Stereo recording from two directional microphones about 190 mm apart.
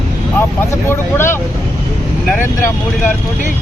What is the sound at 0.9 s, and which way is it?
Speech, 10° left (ahead or behind).